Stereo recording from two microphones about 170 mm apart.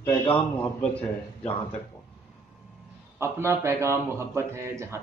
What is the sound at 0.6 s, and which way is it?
Speech, 10° left (ahead or behind).